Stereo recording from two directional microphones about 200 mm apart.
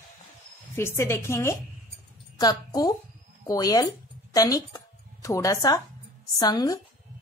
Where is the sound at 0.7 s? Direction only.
10° left (ahead or behind).